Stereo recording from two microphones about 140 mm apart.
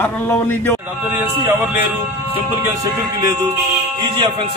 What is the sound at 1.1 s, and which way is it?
Speech, 15° right (ahead or behind).